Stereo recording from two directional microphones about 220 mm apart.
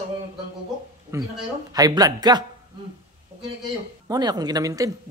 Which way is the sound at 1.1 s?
15° right (ahead or behind).